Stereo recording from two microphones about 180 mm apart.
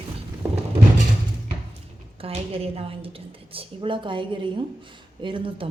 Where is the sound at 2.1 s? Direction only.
30° right (ahead or behind).